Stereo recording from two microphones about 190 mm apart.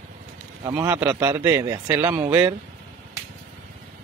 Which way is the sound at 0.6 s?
15° right (ahead or behind).